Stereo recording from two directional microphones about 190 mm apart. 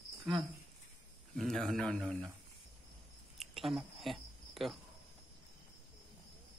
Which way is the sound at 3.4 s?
Centre (ahead or behind).